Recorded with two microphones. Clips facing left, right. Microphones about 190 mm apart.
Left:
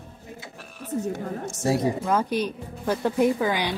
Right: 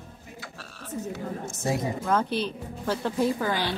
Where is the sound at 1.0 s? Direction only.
70° left (ahead or behind).